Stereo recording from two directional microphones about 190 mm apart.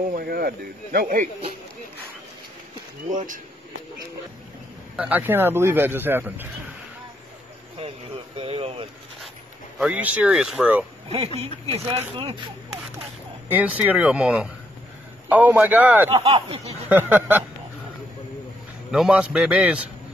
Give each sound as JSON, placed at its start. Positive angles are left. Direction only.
{"t": 0.1, "sound": "speech", "side_deg": -50}
{"t": 3.1, "sound": "speech", "side_deg": -45}
{"t": 4.9, "sound": "a man's voice", "side_deg": -5}
{"t": 8.4, "sound": "vehicle", "side_deg": -30}
{"t": 9.8, "sound": "speech", "side_deg": -5}
{"t": 11.6, "sound": "speech", "side_deg": -30}
{"t": 13.5, "sound": "a man's voice", "side_deg": -10}
{"t": 16.3, "sound": "speech", "side_deg": -35}
{"t": 16.9, "sound": "a man's voice", "side_deg": -10}
{"t": 18.9, "sound": "speech", "side_deg": -5}